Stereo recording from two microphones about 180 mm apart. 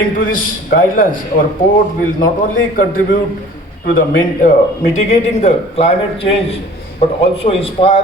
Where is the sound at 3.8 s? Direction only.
60° left (ahead or behind).